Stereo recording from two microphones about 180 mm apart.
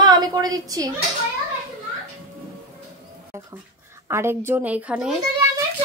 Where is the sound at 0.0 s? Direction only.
20° right (ahead or behind).